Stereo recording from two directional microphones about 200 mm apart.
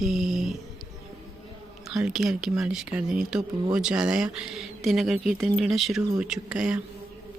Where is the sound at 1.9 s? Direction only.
Centre (ahead or behind).